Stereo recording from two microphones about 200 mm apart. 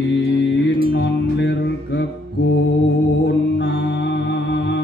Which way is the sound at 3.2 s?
60° left (ahead or behind).